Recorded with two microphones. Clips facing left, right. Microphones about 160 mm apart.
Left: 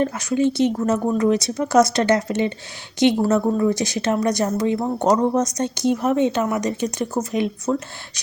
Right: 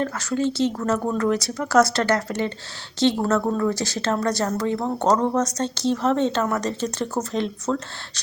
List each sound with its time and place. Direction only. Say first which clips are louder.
0.0 s a woman's voice: left 4 dB; 15° left (ahead or behind)